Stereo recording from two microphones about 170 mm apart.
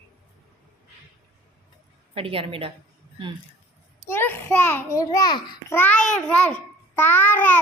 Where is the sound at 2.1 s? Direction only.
35° right (ahead or behind).